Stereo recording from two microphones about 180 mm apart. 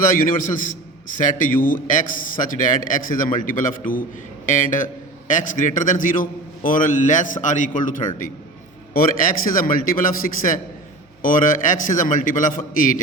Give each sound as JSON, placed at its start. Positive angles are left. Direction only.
{"t": 0.2, "sound": "a man's voice", "side_deg": 50}